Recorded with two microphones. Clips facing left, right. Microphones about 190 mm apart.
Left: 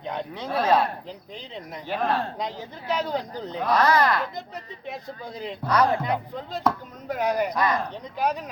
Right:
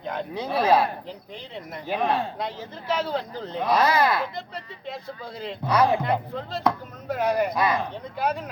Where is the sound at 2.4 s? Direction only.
15° left (ahead or behind).